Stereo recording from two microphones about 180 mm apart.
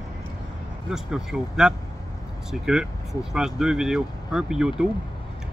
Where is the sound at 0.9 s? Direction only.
5° right (ahead or behind).